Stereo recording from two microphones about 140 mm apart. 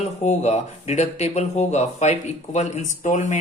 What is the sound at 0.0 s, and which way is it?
Speech, 55° left (ahead or behind).